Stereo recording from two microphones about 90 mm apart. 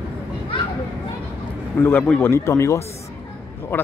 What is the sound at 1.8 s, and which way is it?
Speech, 25° left (ahead or behind).